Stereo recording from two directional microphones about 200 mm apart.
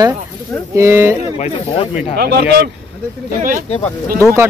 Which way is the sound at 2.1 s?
55° right (ahead or behind).